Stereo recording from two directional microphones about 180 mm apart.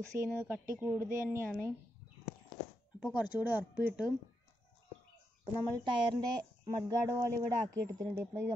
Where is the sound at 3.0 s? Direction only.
10° right (ahead or behind).